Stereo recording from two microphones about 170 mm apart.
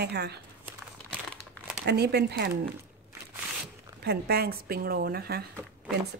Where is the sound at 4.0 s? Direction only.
70° right (ahead or behind).